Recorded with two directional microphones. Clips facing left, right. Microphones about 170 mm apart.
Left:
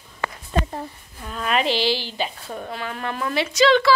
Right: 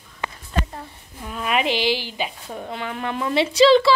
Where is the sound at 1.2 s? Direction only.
10° right (ahead or behind).